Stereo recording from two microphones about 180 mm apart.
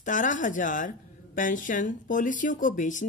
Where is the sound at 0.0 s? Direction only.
45° left (ahead or behind).